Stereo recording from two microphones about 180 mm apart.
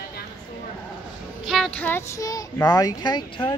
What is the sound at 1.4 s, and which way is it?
A child's voice, centre (ahead or behind).